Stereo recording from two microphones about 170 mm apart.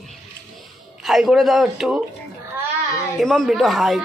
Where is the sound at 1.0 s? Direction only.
Centre (ahead or behind).